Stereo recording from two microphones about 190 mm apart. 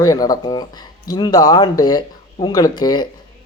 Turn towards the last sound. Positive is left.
turn(degrees=20)  # may be behind; listen again after turning